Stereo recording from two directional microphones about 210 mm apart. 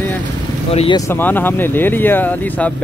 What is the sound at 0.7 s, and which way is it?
Speech, 25° left (ahead or behind).